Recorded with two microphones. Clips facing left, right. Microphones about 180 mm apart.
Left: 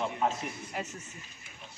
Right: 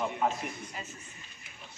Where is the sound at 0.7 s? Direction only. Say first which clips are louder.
Left 6 dB; 75° left (ahead or behind).